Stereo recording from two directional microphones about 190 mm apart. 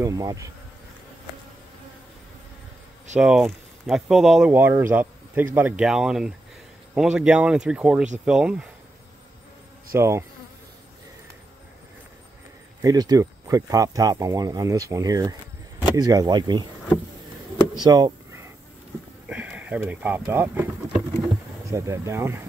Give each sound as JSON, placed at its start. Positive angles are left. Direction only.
{"t": 0.0, "sound": "speech", "side_deg": -15}
{"t": 3.2, "sound": "speech", "side_deg": -5}
{"t": 9.9, "sound": "speech", "side_deg": -15}
{"t": 12.8, "sound": "speech", "side_deg": -20}
{"t": 17.7, "sound": "a sound", "side_deg": -20}
{"t": 19.2, "sound": "speech", "side_deg": -5}